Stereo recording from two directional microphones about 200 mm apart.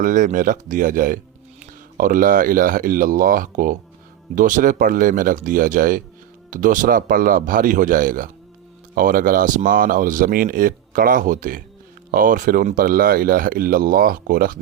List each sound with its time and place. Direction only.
0.0 s speech: 40° right (ahead or behind)